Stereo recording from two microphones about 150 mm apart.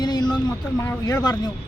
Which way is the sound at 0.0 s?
30° left (ahead or behind).